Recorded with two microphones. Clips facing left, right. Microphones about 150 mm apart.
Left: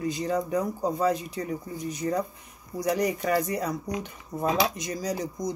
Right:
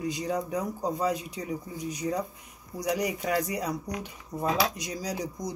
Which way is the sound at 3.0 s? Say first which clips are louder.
Left 4 dB; centre (ahead or behind).